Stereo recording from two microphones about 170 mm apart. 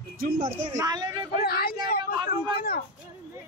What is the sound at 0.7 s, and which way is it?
Speech, 25° right (ahead or behind).